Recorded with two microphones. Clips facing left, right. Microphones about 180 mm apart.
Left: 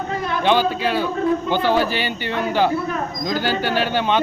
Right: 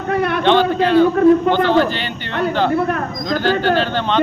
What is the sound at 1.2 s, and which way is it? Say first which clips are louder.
Speech: right 9 dB; 65° right (ahead or behind).